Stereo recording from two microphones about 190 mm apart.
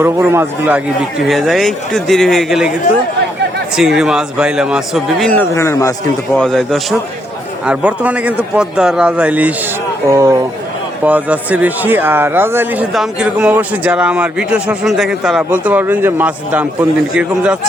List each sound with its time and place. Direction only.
0.0 s speech: 10° right (ahead or behind)
1.2 s speech: centre (ahead or behind)
3.8 s speech: centre (ahead or behind); by 5.9 s 15° left (ahead or behind)
6.3 s speech: centre (ahead or behind)